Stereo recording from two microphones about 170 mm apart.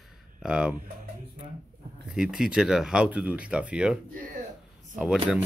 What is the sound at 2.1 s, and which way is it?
Speech, 5° right (ahead or behind).